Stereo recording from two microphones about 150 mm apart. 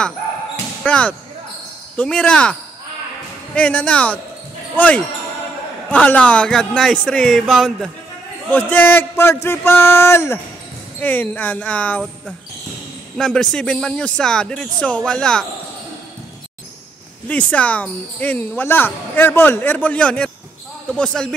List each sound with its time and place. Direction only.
0.8 s speech: 10° left (ahead or behind)
3.5 s a man's voice: 10° left (ahead or behind)
13.2 s a man's voice: 5° left (ahead or behind)
17.3 s a man's voice: 10° left (ahead or behind)